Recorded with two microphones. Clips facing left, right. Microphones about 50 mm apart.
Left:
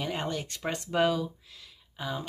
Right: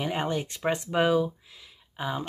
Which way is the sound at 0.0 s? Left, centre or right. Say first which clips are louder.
Right 4 dB; centre.